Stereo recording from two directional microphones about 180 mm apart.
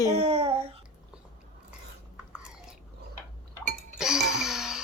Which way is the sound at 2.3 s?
5° right (ahead or behind).